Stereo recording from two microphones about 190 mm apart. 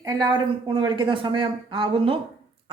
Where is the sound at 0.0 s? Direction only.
20° right (ahead or behind).